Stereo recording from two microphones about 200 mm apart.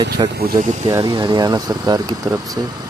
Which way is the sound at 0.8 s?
20° right (ahead or behind).